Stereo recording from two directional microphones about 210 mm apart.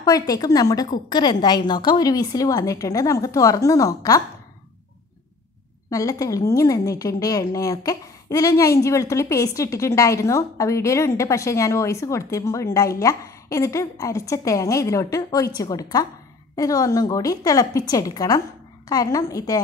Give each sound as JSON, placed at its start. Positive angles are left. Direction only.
{"t": 0.0, "sound": "a woman's voice", "side_deg": 15}
{"t": 5.9, "sound": "a woman's voice", "side_deg": 15}